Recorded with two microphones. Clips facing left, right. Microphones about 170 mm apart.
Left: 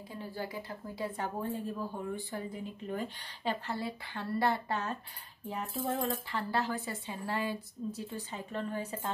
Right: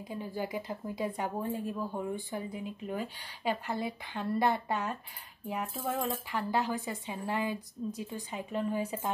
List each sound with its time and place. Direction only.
0.1 s speech: 15° right (ahead or behind)
6.3 s speech: 15° right (ahead or behind)